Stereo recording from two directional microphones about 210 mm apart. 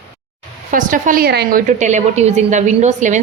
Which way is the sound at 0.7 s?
40° right (ahead or behind).